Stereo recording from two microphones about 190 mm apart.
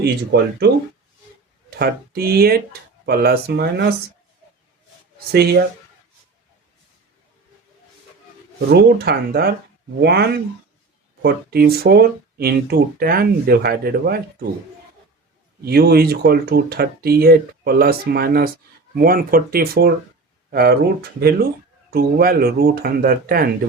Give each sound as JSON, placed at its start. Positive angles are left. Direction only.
{"t": 0.0, "sound": "speech", "side_deg": -60}
{"t": 1.8, "sound": "speech", "side_deg": -55}
{"t": 5.3, "sound": "speech", "side_deg": -55}
{"t": 8.7, "sound": "speech", "side_deg": -55}
{"t": 15.6, "sound": "speech", "side_deg": -55}
{"t": 21.8, "sound": "speech", "side_deg": -50}